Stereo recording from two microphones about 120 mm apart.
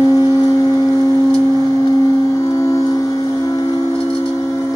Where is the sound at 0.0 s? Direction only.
30° left (ahead or behind).